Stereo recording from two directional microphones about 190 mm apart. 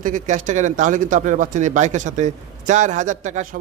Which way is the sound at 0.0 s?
40° right (ahead or behind).